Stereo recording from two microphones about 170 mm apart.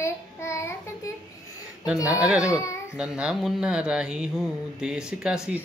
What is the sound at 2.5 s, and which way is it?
Child singing, 15° left (ahead or behind).